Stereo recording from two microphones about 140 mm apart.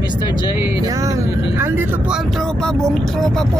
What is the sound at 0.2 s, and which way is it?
Vehicle, 30° left (ahead or behind).